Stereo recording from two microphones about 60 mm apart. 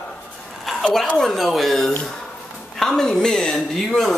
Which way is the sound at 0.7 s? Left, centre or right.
Centre.